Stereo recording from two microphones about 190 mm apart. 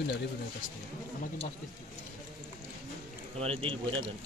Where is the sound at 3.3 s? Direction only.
30° right (ahead or behind).